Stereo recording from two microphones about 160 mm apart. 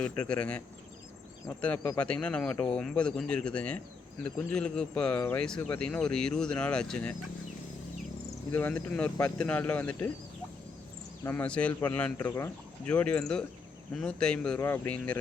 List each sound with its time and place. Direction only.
0.0 s speech: 5° left (ahead or behind)
8.5 s speech: 10° left (ahead or behind)
11.2 s speech: 15° left (ahead or behind)
12.2 s speech: 25° left (ahead or behind)
12.8 s speech: 5° left (ahead or behind)